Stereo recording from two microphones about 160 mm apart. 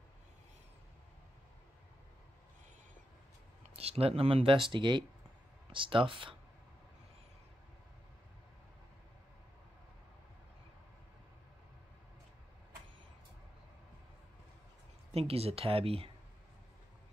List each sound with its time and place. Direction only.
3.6 s speech: 40° right (ahead or behind)
15.1 s speech: 40° right (ahead or behind)